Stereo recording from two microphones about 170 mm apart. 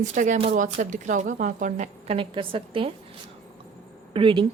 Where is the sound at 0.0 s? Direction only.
50° right (ahead or behind); by 2.9 s 30° right (ahead or behind).